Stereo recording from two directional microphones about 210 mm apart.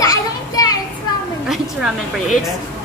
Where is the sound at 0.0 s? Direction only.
15° left (ahead or behind).